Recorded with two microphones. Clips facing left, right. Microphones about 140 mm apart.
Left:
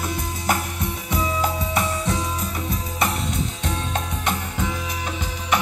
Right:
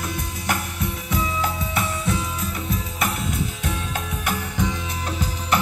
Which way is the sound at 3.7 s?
30° left (ahead or behind).